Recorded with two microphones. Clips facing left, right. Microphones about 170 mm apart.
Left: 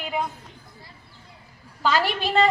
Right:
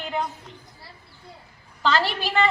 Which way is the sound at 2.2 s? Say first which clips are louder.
Left 2 dB; 25° left (ahead or behind).